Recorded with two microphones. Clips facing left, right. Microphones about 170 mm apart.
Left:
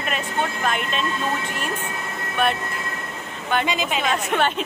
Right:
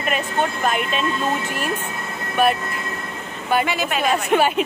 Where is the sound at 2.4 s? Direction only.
5° right (ahead or behind).